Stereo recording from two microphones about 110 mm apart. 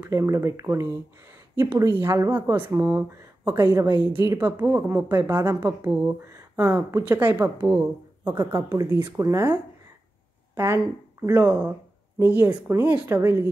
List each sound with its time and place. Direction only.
0.0 s speech: 25° right (ahead or behind)
10.5 s speech: 20° right (ahead or behind)
11.4 s speech: 10° right (ahead or behind)